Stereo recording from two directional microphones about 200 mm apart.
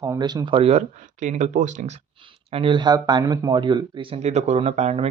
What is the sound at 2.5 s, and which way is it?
Speech, 25° right (ahead or behind).